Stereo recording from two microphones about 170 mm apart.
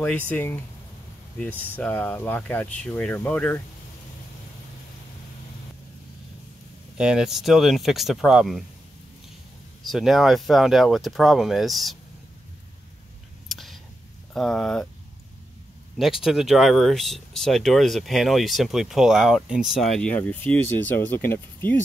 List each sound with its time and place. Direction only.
0.3 s speech: 10° left (ahead or behind)
7.0 s speech: 5° right (ahead or behind)
9.8 s speech: centre (ahead or behind)
13.5 s a sound: centre (ahead or behind)
14.3 s speech: centre (ahead or behind)
16.0 s speech: centre (ahead or behind)